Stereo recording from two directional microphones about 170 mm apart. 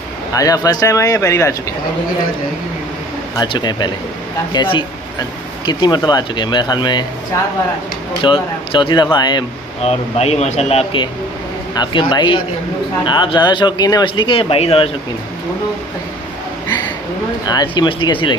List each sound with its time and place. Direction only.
0.3 s a man's voice: 20° left (ahead or behind)
3.3 s a man's voice: 25° left (ahead or behind)
8.2 s a man's voice: 30° left (ahead or behind)
9.8 s a man's voice: 40° left (ahead or behind)
17.5 s a man's voice: 25° left (ahead or behind)